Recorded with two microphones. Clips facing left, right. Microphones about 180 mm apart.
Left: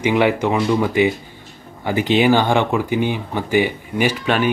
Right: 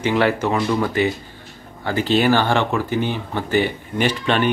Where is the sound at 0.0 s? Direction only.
15° left (ahead or behind).